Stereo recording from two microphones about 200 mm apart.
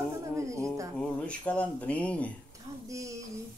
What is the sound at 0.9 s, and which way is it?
Speech, 5° left (ahead or behind).